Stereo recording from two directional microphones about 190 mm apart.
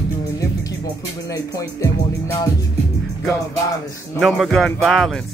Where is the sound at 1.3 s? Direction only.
15° left (ahead or behind).